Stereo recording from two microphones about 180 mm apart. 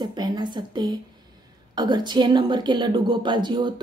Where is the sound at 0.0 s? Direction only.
25° right (ahead or behind).